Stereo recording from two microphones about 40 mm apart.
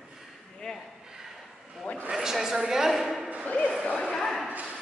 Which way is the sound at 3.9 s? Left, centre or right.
Left.